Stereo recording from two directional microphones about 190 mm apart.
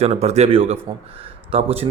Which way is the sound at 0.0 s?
35° right (ahead or behind).